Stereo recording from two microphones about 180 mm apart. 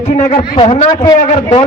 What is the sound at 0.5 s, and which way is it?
Speech, 25° left (ahead or behind).